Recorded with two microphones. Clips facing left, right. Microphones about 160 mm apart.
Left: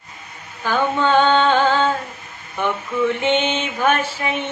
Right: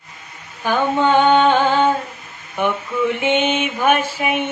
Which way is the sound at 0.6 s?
15° right (ahead or behind).